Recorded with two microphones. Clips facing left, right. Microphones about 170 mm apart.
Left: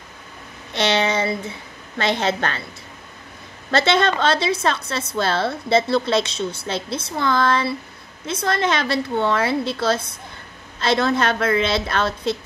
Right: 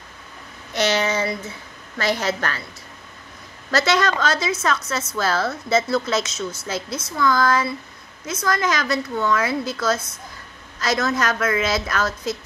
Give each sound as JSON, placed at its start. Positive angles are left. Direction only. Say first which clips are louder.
{"t": 0.7, "sound": "a sound", "louder": "left 1 dB", "side_deg": 25}
{"t": 2.0, "sound": "a woman's voice", "louder": "left 2 dB", "side_deg": 25}
{"t": 3.7, "sound": "a woman's voice", "louder": "left 2 dB", "side_deg": 25}